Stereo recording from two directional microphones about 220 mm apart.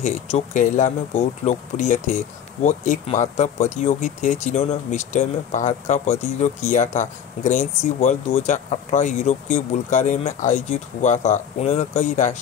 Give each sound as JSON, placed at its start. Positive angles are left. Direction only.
{"t": 0.0, "sound": "speech", "side_deg": 35}